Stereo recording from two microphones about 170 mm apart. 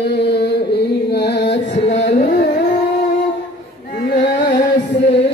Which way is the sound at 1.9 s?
90° left.